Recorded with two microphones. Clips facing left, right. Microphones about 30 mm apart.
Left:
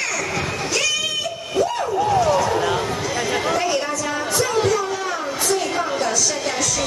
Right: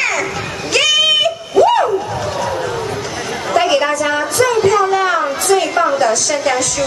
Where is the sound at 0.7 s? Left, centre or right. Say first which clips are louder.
Right 11 dB; right.